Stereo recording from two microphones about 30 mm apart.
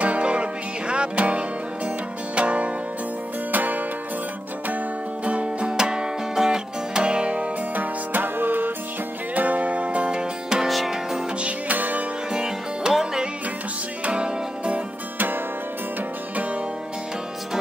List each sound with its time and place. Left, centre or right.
0.0 s music: right
3.5 s music: right
5.2 s music: right
5.7 s music: right
7.0 s music: right
7.7 s music: right
9.3 s music: right
10.1 s music: right
11.7 s music: right
12.3 s music: right
14.1 s music: right